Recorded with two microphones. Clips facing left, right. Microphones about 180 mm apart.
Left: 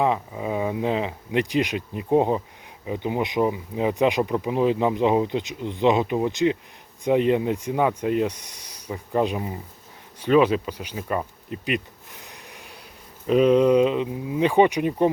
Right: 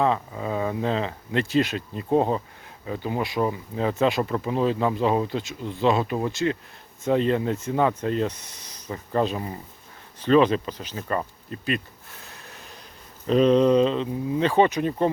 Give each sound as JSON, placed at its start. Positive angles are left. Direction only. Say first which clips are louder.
{"t": 0.0, "sound": "speech", "louder": "even", "side_deg": 15}
{"t": 10.2, "sound": "bee", "louder": "even", "side_deg": 10}
{"t": 13.2, "sound": "speech", "louder": "left 1 dB", "side_deg": 10}